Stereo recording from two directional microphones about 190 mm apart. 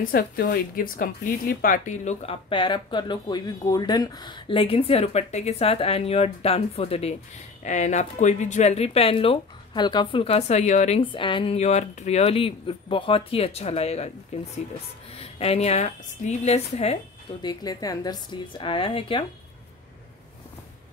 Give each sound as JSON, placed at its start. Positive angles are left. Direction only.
{"t": 0.1, "sound": "speech", "side_deg": 50}
{"t": 15.1, "sound": "speech", "side_deg": 30}
{"t": 17.5, "sound": "speech", "side_deg": 20}